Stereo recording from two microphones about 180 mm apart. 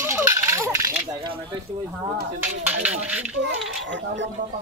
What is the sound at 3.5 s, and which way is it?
Speech, 90° right.